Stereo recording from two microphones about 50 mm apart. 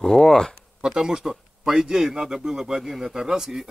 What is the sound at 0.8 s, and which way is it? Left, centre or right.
Speech, centre.